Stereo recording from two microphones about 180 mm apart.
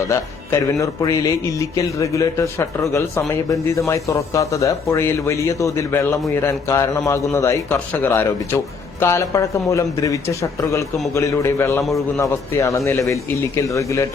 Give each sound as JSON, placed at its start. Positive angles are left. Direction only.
{"t": 0.1, "sound": "speech", "side_deg": 15}